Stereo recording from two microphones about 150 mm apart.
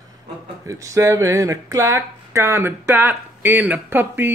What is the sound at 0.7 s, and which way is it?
Speech, 20° right (ahead or behind).